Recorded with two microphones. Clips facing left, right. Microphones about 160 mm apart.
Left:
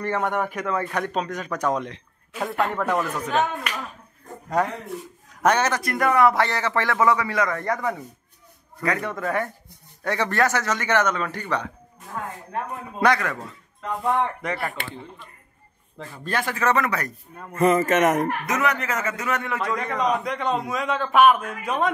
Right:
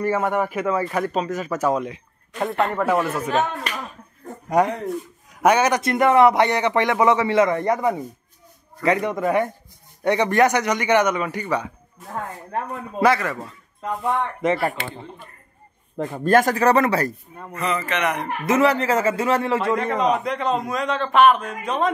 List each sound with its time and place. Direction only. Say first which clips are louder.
0.0 s speech: right 3 dB; 5° right (ahead or behind)
4.6 s a man's voice: right 5 dB; 15° right (ahead or behind)
5.8 s a man's voice: right 4 dB; 25° right (ahead or behind)
13.0 s speech: right 2 dB; centre (ahead or behind)
14.4 s a man's voice: right 8 dB; 25° right (ahead or behind)
16.0 s speech: right 11 dB; 45° right (ahead or behind); by 17.1 s 30° right (ahead or behind)
17.6 s speech: left 6 dB; 45° left (ahead or behind)
18.4 s a man's voice: right 6 dB; 30° right (ahead or behind)
19.8 s speech: right 3 dB; centre (ahead or behind)